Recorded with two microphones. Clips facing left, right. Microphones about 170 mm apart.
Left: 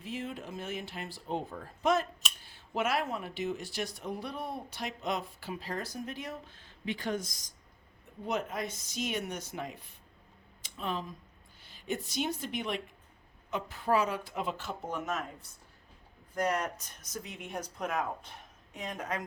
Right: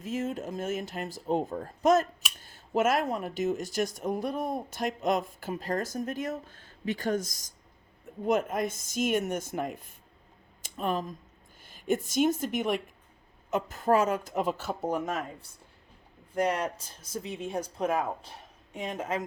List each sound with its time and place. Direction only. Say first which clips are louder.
0.0 s speech: right 7 dB; 45° right (ahead or behind)
10.6 s a sound: right 6 dB; 45° right (ahead or behind)
11.6 s a woman's voice: right 8 dB; 45° right (ahead or behind)
16.5 s speech: right 2 dB; 30° right (ahead or behind)